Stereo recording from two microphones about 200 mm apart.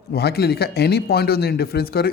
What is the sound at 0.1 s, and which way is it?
Speech, 55° left (ahead or behind).